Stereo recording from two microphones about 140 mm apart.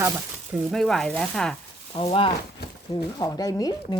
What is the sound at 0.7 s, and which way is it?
Speech, centre (ahead or behind).